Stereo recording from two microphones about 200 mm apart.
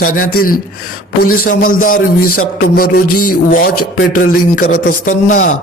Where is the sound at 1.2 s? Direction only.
45° left (ahead or behind).